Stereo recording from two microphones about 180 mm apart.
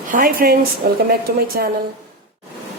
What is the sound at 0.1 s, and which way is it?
Speech, 55° right (ahead or behind).